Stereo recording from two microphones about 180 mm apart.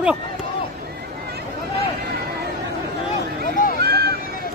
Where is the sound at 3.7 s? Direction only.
60° right (ahead or behind).